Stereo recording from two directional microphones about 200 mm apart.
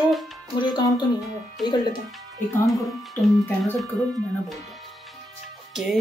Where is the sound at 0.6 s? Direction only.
20° left (ahead or behind).